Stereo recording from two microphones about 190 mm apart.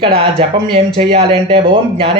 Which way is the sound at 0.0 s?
30° right (ahead or behind).